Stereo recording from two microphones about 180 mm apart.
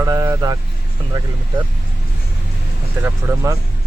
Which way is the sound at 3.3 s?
15° right (ahead or behind).